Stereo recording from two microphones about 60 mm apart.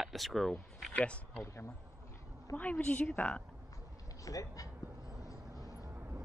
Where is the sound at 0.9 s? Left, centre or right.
Left.